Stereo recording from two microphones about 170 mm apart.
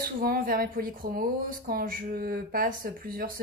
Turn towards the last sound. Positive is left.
turn(degrees=-55)  # may be behind; listen again after turning